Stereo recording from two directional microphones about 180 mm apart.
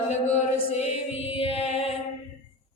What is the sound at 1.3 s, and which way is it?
Mantra, 35° left (ahead or behind).